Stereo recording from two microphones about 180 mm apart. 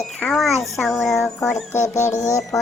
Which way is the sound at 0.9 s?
Centre (ahead or behind).